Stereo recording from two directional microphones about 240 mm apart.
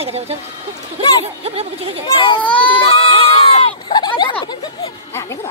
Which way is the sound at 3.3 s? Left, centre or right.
Left.